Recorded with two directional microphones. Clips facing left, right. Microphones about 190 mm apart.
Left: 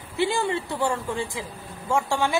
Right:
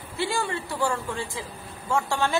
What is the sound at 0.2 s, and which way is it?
A woman's voice, 20° left (ahead or behind).